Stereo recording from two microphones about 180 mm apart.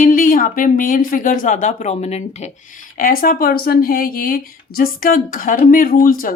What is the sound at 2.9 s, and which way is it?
A woman's voice, 55° left (ahead or behind).